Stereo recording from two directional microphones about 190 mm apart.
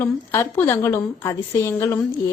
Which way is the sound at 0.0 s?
10° left (ahead or behind).